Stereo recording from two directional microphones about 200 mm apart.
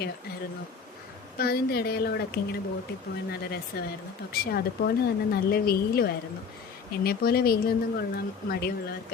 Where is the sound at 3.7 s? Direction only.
50° left (ahead or behind).